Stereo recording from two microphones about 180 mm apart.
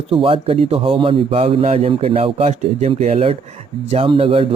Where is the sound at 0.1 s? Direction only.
30° right (ahead or behind).